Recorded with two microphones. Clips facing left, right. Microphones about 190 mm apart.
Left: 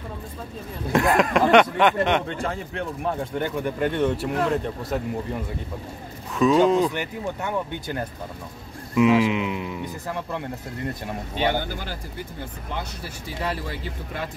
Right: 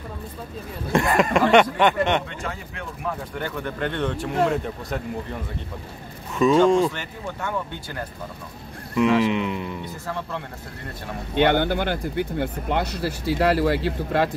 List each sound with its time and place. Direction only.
0.9 s speech: centre (ahead or behind)
2.2 s a man's voice: 35° left (ahead or behind)
3.3 s speech: 15° left (ahead or behind); by 5.0 s centre (ahead or behind)
6.3 s speech: centre (ahead or behind)
6.9 s speech: 15° left (ahead or behind)
8.9 s speech: 5° left (ahead or behind)
10.0 s speech: 15° left (ahead or behind)
11.3 s speech: 65° right (ahead or behind)